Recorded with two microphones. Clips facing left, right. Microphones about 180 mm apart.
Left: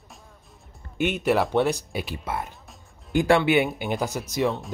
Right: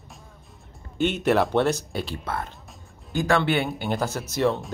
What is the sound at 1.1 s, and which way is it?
Speech, centre (ahead or behind).